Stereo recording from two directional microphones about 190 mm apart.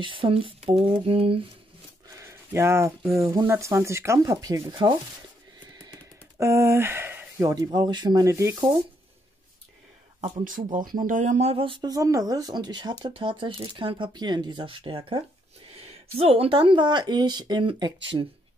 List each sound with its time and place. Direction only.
0.0 s speech: 25° right (ahead or behind)
2.1 s a sound: 15° right (ahead or behind)
3.2 s speech: 15° right (ahead or behind)
6.3 s speech: 15° right (ahead or behind)
10.7 s speech: 45° right (ahead or behind); by 17.9 s 25° right (ahead or behind)